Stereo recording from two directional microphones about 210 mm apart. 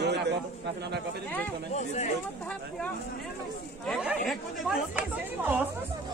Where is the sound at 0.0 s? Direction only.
55° right (ahead or behind).